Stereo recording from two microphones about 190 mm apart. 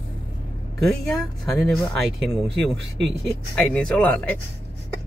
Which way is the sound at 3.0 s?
5° left (ahead or behind).